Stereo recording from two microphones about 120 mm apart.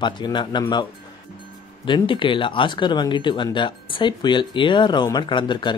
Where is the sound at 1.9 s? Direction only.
45° left (ahead or behind).